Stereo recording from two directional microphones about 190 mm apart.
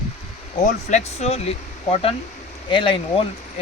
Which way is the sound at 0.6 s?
40° left (ahead or behind).